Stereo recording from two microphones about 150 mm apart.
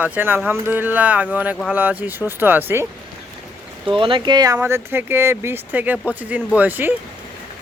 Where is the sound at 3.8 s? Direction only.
35° right (ahead or behind); by 6.9 s 10° right (ahead or behind).